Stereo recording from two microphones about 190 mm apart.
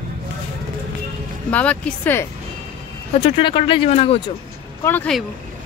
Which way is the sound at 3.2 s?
25° left (ahead or behind).